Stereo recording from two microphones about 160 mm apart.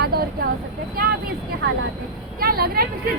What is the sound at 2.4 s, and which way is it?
Speech, 70° right (ahead or behind).